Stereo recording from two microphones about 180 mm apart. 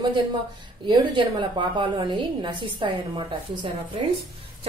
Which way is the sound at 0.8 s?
25° right (ahead or behind).